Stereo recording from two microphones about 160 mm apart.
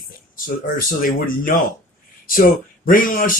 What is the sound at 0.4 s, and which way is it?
Speech, 60° left (ahead or behind).